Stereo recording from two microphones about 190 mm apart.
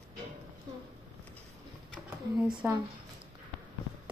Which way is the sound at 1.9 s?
5° right (ahead or behind).